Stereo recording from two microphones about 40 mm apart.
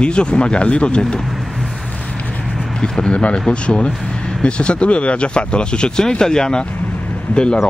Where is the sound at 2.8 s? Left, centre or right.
Left.